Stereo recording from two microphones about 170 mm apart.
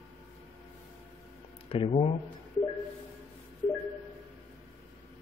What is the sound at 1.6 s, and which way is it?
Speech, 35° left (ahead or behind).